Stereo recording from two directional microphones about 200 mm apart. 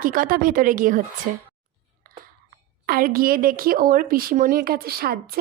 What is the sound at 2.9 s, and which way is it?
Speech, 45° right (ahead or behind).